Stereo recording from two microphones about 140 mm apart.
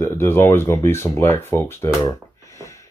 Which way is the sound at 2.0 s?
20° left (ahead or behind).